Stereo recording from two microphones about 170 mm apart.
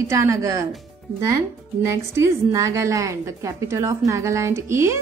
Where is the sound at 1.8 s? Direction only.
15° right (ahead or behind).